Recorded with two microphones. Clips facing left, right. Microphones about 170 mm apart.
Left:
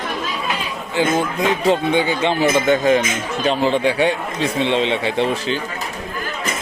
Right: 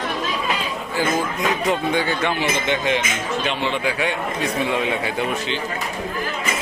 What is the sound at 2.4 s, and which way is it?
Speech, 45° left (ahead or behind).